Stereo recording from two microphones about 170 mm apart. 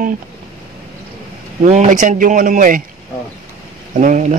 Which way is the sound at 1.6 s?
45° right (ahead or behind).